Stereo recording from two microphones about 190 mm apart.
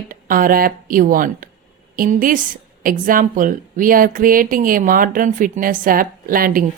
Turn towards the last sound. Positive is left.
turn(degrees=-50)  # may be behind; listen again after turning